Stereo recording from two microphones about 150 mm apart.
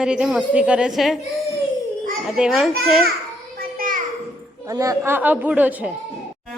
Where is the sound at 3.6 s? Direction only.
70° right (ahead or behind).